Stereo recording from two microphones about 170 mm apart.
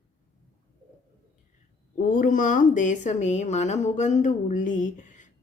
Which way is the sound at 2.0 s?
50° left (ahead or behind).